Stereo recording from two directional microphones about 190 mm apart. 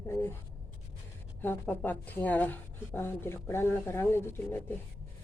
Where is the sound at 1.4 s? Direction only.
10° left (ahead or behind).